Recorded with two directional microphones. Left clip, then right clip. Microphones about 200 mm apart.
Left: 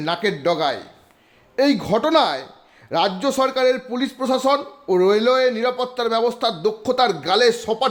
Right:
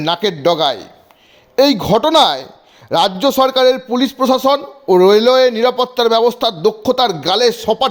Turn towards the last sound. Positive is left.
turn(degrees=-20)  # may be behind; listen again after turning